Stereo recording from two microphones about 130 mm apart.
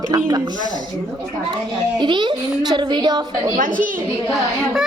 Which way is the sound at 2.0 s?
35° right (ahead or behind).